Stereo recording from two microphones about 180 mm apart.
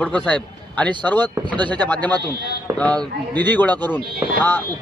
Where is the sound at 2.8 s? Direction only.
5° left (ahead or behind).